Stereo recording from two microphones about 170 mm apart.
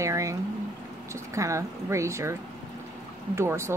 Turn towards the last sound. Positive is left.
turn(degrees=-15)  # may be behind; listen again after turning